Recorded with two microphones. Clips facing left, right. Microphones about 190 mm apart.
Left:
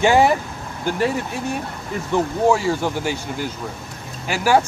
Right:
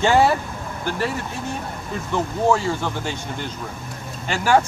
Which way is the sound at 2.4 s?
10° left (ahead or behind).